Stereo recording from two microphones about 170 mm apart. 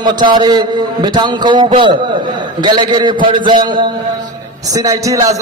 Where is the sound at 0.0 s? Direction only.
25° right (ahead or behind).